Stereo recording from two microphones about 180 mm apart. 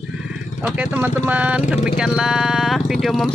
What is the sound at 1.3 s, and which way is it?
Speech, 10° right (ahead or behind).